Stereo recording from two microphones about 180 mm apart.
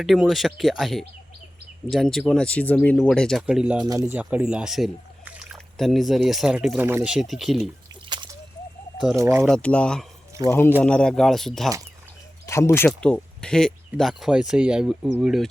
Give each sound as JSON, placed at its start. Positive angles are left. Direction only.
{"t": 0.0, "sound": "speech", "side_deg": 0}
{"t": 3.8, "sound": "speech", "side_deg": -20}
{"t": 9.1, "sound": "speech", "side_deg": -15}
{"t": 9.5, "sound": "speech", "side_deg": 5}
{"t": 12.5, "sound": "speech", "side_deg": 15}